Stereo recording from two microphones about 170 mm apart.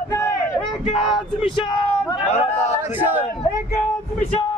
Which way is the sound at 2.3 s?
40° left (ahead or behind).